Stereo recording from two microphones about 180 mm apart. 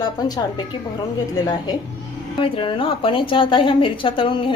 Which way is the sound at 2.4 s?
30° left (ahead or behind).